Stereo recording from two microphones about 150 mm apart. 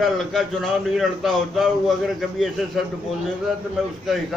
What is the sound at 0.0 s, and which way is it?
A man's voice, centre (ahead or behind).